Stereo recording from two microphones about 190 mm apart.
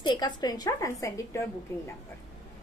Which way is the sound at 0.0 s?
25° left (ahead or behind).